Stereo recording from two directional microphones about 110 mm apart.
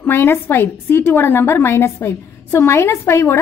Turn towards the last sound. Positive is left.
turn(degrees=25)  # may be behind; listen again after turning